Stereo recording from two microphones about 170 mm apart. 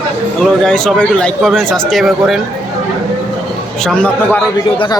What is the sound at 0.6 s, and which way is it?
Speech, 5° left (ahead or behind).